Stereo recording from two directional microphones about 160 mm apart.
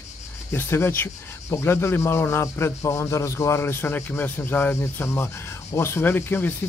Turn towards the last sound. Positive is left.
turn(degrees=15)  # may be behind; listen again after turning